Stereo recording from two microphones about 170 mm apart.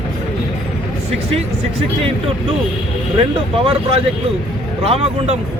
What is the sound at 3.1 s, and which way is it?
Speech, 35° right (ahead or behind).